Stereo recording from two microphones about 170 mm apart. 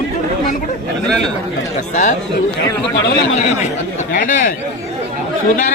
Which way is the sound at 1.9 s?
45° left (ahead or behind).